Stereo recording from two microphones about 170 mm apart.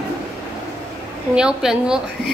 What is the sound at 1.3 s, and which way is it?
Speech, 5° right (ahead or behind).